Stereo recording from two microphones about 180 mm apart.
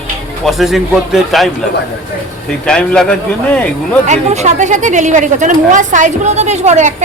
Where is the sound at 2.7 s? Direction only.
5° left (ahead or behind).